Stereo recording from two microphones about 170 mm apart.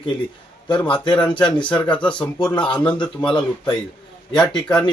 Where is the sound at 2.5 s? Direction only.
5° left (ahead or behind).